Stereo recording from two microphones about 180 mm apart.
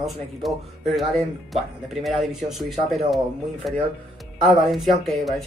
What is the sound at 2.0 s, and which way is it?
Speech, centre (ahead or behind).